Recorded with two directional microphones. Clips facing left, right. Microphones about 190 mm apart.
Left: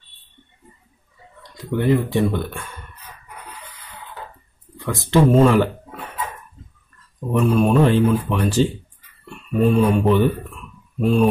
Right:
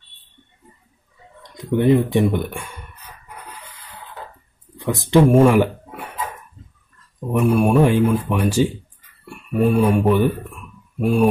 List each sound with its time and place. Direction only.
1.4 s speech: 20° right (ahead or behind)
4.7 s a sound: 15° right (ahead or behind)
7.2 s speech: 10° right (ahead or behind)
9.2 s mantra: 10° right (ahead or behind)